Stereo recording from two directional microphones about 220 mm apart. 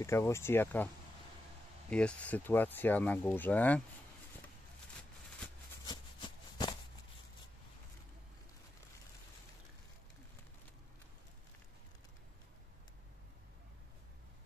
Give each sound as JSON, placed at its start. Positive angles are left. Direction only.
{"t": 0.0, "sound": "speech", "side_deg": 10}
{"t": 1.9, "sound": "speech", "side_deg": 5}
{"t": 5.9, "sound": "a sound", "side_deg": 20}